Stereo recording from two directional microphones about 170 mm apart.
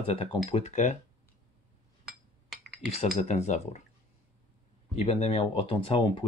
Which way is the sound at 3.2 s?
40° left (ahead or behind).